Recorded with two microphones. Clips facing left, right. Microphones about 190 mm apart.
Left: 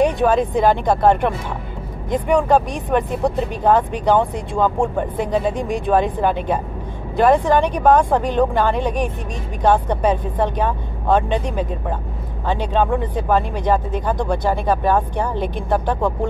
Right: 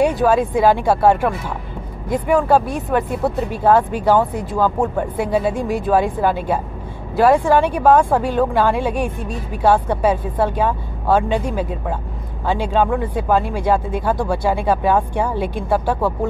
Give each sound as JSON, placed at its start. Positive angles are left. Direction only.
{"t": 0.0, "sound": "speech", "side_deg": -5}